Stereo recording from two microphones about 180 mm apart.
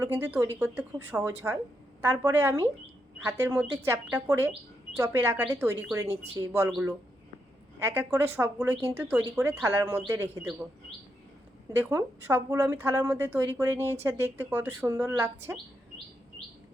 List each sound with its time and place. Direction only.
0.0 s speech: 10° right (ahead or behind)
11.8 s speech: 15° right (ahead or behind)